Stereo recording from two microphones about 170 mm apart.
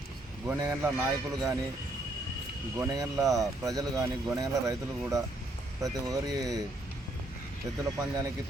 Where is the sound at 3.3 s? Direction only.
20° right (ahead or behind).